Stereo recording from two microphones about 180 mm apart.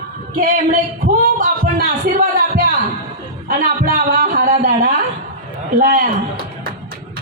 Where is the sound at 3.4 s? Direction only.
55° right (ahead or behind).